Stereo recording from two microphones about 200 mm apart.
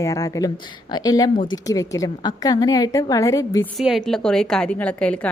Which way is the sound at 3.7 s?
Centre (ahead or behind).